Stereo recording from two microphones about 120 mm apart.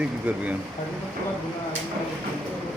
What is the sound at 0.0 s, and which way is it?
Speech, 10° right (ahead or behind).